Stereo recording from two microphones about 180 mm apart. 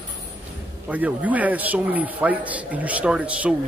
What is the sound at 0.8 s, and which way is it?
A man's voice, 10° right (ahead or behind).